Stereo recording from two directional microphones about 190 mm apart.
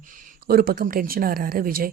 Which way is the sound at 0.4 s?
50° right (ahead or behind).